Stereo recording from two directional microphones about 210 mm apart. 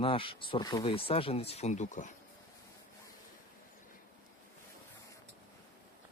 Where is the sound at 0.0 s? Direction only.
25° left (ahead or behind).